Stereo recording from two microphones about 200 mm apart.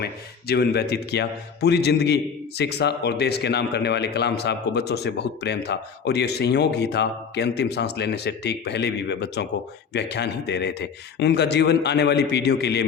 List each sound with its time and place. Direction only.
0.0 s a man's voice: 55° left (ahead or behind)